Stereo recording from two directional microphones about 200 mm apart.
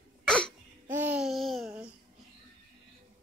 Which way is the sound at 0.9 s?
10° right (ahead or behind).